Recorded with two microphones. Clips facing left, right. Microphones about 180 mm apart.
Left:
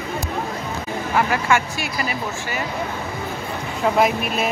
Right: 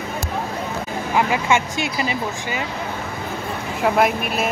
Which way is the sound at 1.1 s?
15° right (ahead or behind).